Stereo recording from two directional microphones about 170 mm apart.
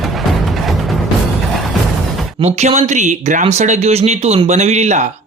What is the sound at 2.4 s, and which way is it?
Speech, 40° right (ahead or behind).